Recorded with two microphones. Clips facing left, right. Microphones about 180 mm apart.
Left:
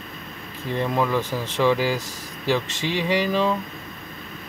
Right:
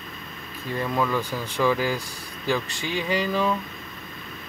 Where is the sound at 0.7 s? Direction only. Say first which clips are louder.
Left 2 dB; 25° left (ahead or behind).